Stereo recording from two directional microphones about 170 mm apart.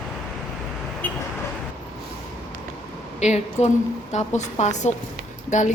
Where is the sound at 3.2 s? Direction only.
40° left (ahead or behind).